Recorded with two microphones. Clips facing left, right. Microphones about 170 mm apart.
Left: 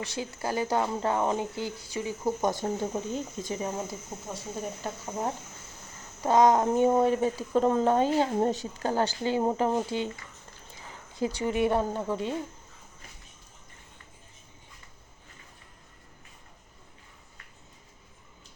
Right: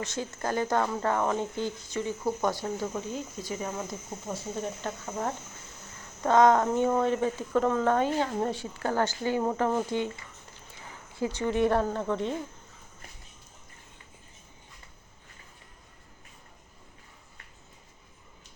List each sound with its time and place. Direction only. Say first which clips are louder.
0.0 s speech: even; 10° left (ahead or behind)
2.6 s speech: left 2 dB; 30° left (ahead or behind)
4.3 s speech: right 2 dB; 10° left (ahead or behind)
7.5 s speech: left 2 dB; 25° left (ahead or behind)
11.2 s speech: even; 15° left (ahead or behind)